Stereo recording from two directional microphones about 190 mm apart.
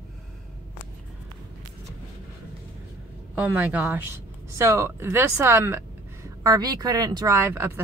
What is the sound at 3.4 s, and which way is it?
Speech, 10° right (ahead or behind).